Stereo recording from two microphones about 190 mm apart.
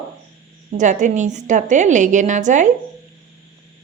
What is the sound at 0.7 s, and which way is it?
A woman's voice, 40° right (ahead or behind).